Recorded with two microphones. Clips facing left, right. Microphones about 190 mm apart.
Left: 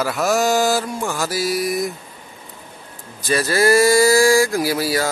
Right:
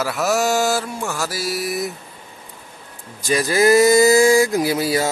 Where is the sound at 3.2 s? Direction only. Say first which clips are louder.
Right 1 dB; 15° right (ahead or behind).